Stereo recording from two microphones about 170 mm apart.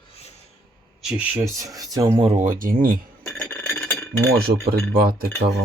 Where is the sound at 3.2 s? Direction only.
5° left (ahead or behind).